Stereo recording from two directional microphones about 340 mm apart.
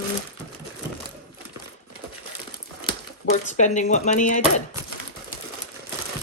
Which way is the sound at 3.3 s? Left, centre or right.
Left.